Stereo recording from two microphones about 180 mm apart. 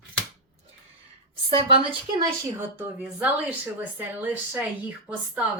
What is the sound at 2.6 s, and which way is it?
Speech, 10° right (ahead or behind).